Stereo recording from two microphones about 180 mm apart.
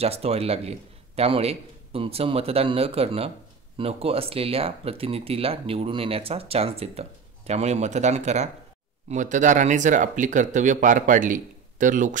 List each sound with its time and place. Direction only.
0.0 s speech: 35° right (ahead or behind)